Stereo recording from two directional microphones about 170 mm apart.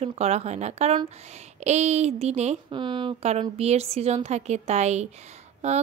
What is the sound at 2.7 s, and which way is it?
A woman's voice, 30° right (ahead or behind).